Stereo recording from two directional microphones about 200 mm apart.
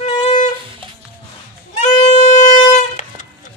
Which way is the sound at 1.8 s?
35° left (ahead or behind).